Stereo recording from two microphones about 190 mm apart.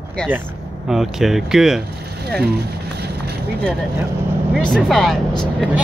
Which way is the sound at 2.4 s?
60° right (ahead or behind).